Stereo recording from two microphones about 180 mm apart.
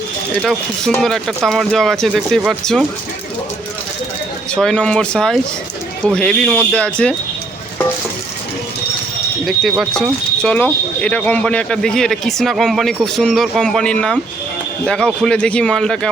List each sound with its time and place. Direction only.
0.4 s speech: 5° left (ahead or behind)
4.5 s speech: 5° left (ahead or behind)
9.5 s speech: centre (ahead or behind)